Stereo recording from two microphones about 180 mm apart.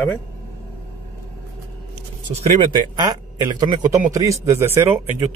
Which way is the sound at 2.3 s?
35° right (ahead or behind).